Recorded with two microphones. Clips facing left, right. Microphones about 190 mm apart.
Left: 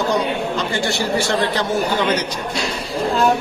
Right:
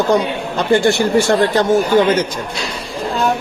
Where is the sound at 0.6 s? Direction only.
55° right (ahead or behind).